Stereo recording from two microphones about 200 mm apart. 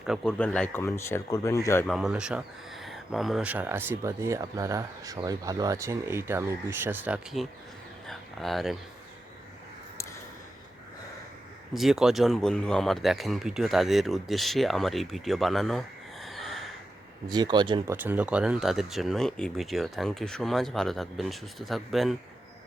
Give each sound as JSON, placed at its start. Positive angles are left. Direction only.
{"t": 0.0, "sound": "speech", "side_deg": 0}
{"t": 1.9, "sound": "speech", "side_deg": -5}
{"t": 8.0, "sound": "a sound", "side_deg": 0}
{"t": 11.7, "sound": "speech", "side_deg": 0}
{"t": 16.2, "sound": "a sound", "side_deg": 0}
{"t": 17.2, "sound": "speech", "side_deg": -20}
{"t": 17.9, "sound": "speech", "side_deg": -10}